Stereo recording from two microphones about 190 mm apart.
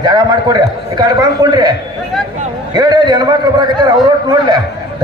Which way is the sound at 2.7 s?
20° right (ahead or behind).